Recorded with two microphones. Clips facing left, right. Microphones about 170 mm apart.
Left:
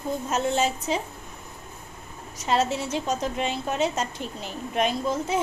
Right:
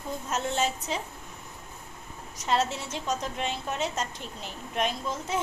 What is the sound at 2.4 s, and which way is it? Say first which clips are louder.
A woman's voice: left 3 dB; 5° left (ahead or behind).